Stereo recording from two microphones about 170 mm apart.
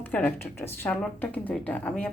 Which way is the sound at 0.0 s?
10° left (ahead or behind).